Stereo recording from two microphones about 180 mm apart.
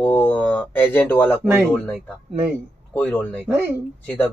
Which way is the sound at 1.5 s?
10° right (ahead or behind).